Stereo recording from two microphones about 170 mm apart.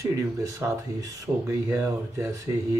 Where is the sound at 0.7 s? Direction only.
20° right (ahead or behind).